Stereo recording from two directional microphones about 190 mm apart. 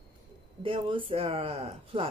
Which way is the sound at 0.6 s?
25° right (ahead or behind).